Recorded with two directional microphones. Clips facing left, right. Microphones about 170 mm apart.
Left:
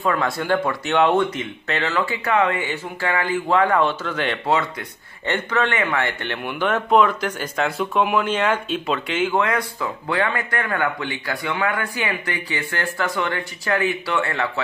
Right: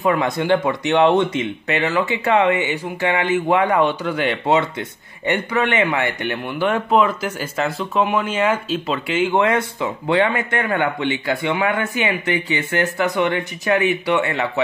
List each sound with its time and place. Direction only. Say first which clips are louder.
0.0 s a man's voice: right 3 dB; 20° right (ahead or behind)
9.3 s a man's voice: right 4 dB; 25° right (ahead or behind)